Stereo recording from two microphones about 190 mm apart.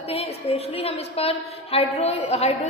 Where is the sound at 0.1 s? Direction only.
30° left (ahead or behind).